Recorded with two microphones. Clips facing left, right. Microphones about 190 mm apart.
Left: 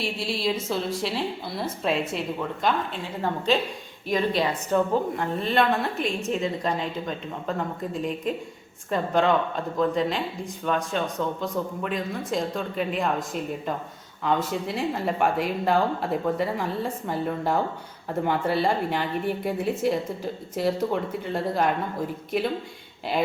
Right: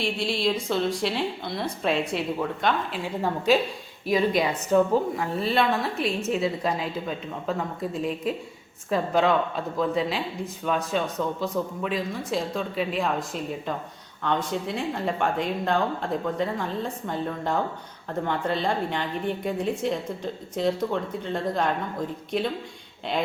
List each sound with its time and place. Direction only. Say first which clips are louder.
0.0 s a woman's voice: right 2 dB; centre (ahead or behind)
8.9 s a woman's voice: even; 5° right (ahead or behind)